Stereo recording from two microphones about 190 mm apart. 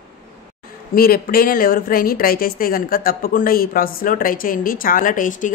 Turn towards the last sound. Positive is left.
turn(degrees=45)  # may be behind; listen again after turning